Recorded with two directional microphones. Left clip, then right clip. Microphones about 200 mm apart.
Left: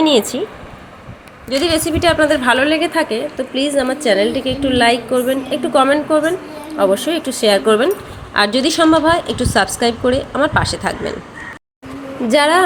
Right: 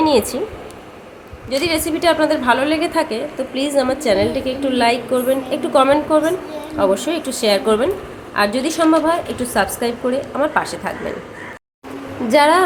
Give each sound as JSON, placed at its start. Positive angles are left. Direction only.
{"t": 0.0, "sound": "a woman's voice", "side_deg": 10}
{"t": 1.5, "sound": "a woman's voice", "side_deg": 10}
{"t": 12.3, "sound": "a woman's voice", "side_deg": 10}